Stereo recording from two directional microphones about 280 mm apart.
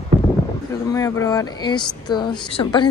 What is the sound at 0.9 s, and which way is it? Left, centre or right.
Speech, centre.